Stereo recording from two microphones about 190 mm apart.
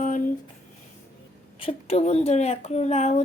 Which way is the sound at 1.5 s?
30° left (ahead or behind).